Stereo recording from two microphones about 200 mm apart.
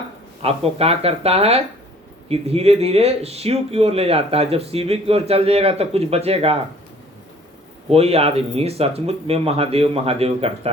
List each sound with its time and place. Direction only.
0.4 s speech: 30° right (ahead or behind)
7.9 s speech: 30° right (ahead or behind)